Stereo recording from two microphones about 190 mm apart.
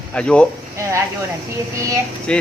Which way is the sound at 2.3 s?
5° left (ahead or behind).